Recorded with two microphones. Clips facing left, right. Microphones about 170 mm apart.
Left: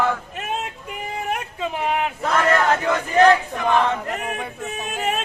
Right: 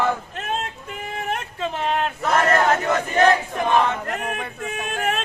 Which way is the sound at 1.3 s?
10° left (ahead or behind).